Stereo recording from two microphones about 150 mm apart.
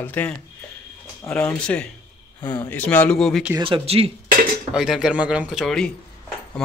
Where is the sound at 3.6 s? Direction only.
40° right (ahead or behind).